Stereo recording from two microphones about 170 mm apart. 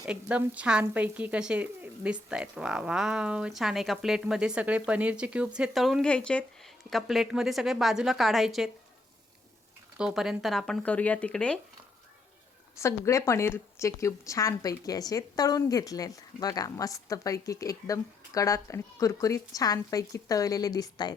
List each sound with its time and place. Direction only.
0.0 s speech: 10° right (ahead or behind)
10.0 s speech: 5° right (ahead or behind)
12.8 s speech: 15° left (ahead or behind)